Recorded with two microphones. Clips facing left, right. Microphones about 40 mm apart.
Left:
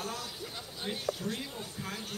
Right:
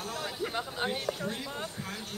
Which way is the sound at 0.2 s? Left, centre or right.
Right.